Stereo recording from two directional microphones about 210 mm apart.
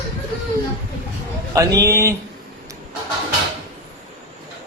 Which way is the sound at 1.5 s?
15° right (ahead or behind).